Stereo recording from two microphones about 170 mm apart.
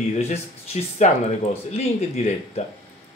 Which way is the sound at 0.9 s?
40° left (ahead or behind).